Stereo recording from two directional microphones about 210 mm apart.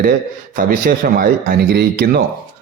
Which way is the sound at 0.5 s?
40° right (ahead or behind).